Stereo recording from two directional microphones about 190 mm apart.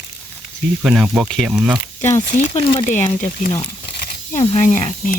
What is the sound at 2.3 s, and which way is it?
Speech, 40° left (ahead or behind).